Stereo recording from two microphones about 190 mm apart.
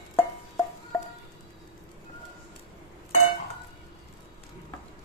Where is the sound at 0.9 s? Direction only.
15° left (ahead or behind).